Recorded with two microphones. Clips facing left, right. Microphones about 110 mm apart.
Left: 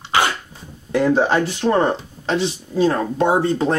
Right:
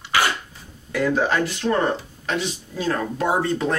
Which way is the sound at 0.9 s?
30° left (ahead or behind).